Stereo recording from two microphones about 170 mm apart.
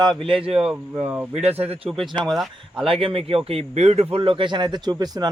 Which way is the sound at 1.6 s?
35° right (ahead or behind).